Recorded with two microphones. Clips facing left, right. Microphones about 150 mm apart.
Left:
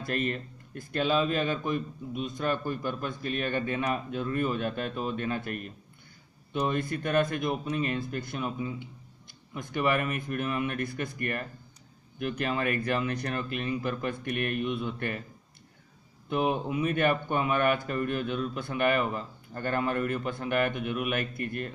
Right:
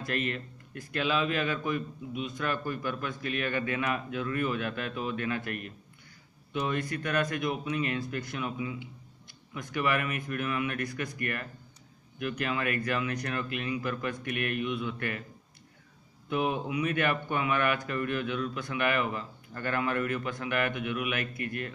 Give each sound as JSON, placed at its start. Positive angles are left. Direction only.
{"t": 0.0, "sound": "a man's voice", "side_deg": 40}
{"t": 6.5, "sound": "a man's voice", "side_deg": 40}
{"t": 9.8, "sound": "a man's voice", "side_deg": 35}
{"t": 16.6, "sound": "a man's voice", "side_deg": 40}